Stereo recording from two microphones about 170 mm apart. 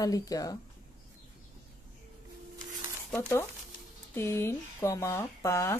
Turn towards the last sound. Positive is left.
turn(degrees=15)  # may be behind; listen again after turning